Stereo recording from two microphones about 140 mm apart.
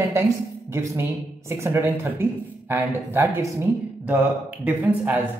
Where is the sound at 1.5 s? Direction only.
20° right (ahead or behind).